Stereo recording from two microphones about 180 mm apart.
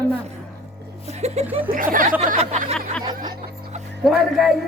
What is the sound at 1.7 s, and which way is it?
Speech, 50° right (ahead or behind).